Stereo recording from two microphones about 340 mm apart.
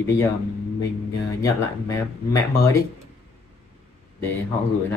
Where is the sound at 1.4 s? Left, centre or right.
Centre.